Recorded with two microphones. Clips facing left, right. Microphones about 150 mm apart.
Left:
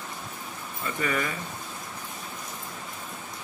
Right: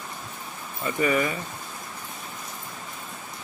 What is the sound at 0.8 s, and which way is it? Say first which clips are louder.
Speech: right 5 dB; 10° right (ahead or behind).